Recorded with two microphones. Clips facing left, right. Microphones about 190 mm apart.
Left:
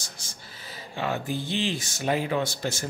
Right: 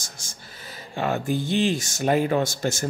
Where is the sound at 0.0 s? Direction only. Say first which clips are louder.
Right 1 dB; 45° right (ahead or behind).